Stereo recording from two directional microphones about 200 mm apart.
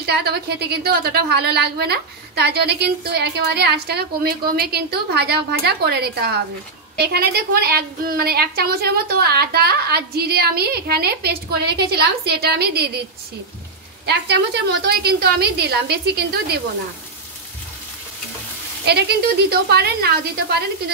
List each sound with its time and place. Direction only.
0.0 s a woman's voice: 55° right (ahead or behind)
14.0 s a woman's voice: 55° right (ahead or behind)
19.5 s a woman's voice: 55° right (ahead or behind)